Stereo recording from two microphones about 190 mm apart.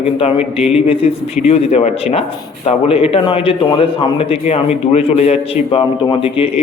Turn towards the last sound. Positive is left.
turn(degrees=30)  # may be behind; listen again after turning